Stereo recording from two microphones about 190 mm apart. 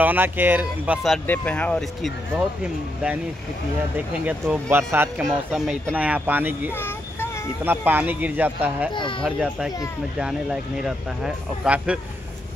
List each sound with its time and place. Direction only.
0.0 s speech: 10° right (ahead or behind)
4.3 s speech: 10° right (ahead or behind)
6.7 s a sound: 10° left (ahead or behind)
7.6 s speech: 10° right (ahead or behind)
8.9 s a child's voice: 25° left (ahead or behind)
9.2 s speech: centre (ahead or behind)